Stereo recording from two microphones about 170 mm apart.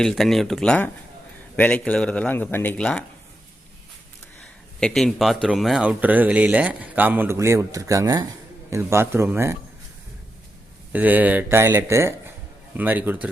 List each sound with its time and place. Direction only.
0.0 s speech: centre (ahead or behind)
4.8 s speech: centre (ahead or behind); by 9.6 s 15° right (ahead or behind)
10.9 s speech: 10° right (ahead or behind)